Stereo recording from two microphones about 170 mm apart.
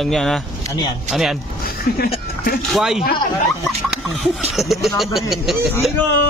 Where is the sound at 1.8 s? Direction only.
65° left (ahead or behind).